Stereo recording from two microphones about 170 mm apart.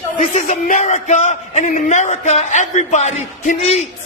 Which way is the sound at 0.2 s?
45° left (ahead or behind).